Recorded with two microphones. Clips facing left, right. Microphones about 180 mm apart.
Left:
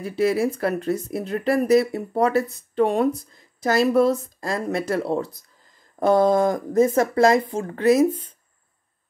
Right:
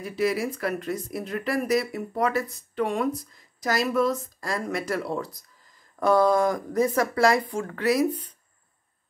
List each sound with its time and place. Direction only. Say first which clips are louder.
0.0 s speech: left 5 dB; 30° left (ahead or behind)